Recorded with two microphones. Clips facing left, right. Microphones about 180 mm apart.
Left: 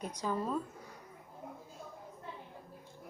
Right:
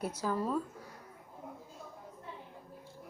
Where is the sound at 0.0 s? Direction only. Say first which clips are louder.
Right 2 dB; 5° right (ahead or behind).